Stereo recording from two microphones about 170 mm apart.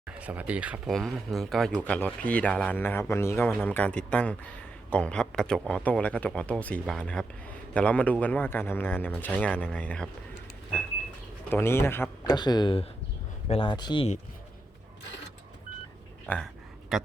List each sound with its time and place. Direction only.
0.2 s speech: 10° right (ahead or behind); by 10.1 s 10° left (ahead or behind)
11.5 s speech: 15° left (ahead or behind)
12.3 s speech: 25° left (ahead or behind)
16.2 s a sound: 10° left (ahead or behind)